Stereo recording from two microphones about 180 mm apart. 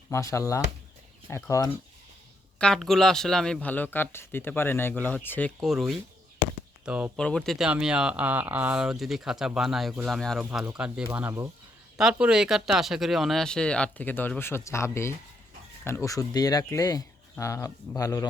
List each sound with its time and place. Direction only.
0.1 s speech: 15° left (ahead or behind)
2.6 s speech: 5° left (ahead or behind)
7.2 s speech: 5° left (ahead or behind)